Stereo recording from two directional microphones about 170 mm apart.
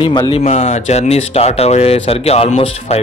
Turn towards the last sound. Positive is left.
turn(degrees=40)  # may be behind; listen again after turning